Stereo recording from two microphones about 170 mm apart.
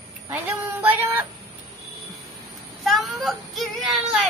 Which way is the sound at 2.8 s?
Centre (ahead or behind).